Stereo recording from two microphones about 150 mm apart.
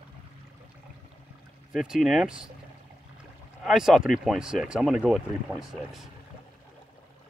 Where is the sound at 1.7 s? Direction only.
Centre (ahead or behind).